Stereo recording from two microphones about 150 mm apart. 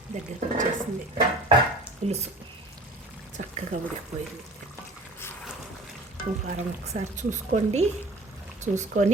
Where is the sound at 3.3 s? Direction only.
55° right (ahead or behind).